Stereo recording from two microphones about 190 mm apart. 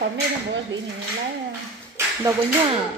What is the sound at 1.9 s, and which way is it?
Speech, 20° right (ahead or behind).